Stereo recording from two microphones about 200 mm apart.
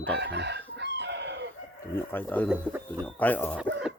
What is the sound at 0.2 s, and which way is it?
Chicken, 60° right (ahead or behind).